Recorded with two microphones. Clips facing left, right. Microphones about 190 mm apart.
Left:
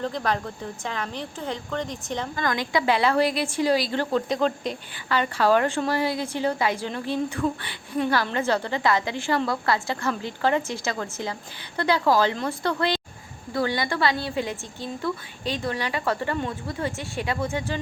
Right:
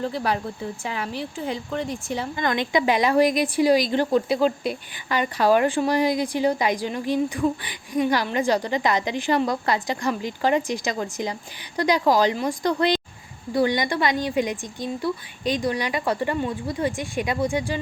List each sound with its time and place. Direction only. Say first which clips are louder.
0.0 s a woman's voice: right 1 dB; 10° right (ahead or behind)
2.3 s a woman's voice: right 3 dB; 20° right (ahead or behind)